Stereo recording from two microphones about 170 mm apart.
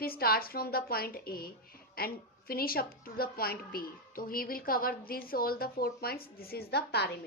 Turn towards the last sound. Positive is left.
turn(degrees=70)  # may be behind; listen again after turning